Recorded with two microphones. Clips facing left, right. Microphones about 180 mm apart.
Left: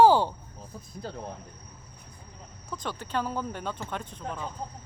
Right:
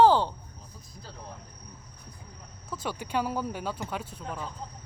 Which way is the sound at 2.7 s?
10° right (ahead or behind).